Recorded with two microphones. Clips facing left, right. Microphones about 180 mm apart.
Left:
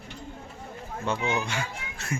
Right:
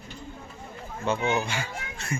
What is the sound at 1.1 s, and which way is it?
Speech, 35° right (ahead or behind).